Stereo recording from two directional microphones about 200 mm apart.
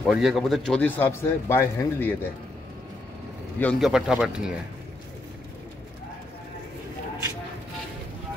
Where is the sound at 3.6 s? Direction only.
Centre (ahead or behind).